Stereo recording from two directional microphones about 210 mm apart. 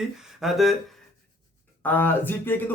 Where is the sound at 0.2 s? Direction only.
Centre (ahead or behind).